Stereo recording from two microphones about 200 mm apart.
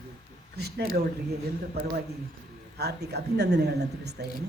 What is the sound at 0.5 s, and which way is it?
Speech, 55° right (ahead or behind).